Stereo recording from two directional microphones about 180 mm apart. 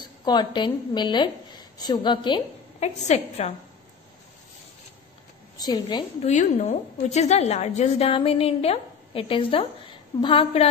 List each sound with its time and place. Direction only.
0.0 s a woman's voice: 25° left (ahead or behind)
2.8 s a woman's voice: 40° left (ahead or behind)
5.6 s a woman's voice: 25° left (ahead or behind)
6.2 s a woman's voice: 40° left (ahead or behind)